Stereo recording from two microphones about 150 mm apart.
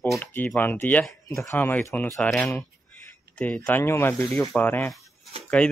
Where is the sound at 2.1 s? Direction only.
5° left (ahead or behind).